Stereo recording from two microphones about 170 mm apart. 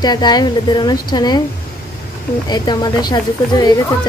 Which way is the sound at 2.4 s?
25° left (ahead or behind).